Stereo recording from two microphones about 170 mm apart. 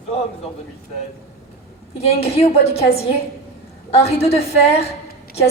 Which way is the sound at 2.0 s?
35° left (ahead or behind).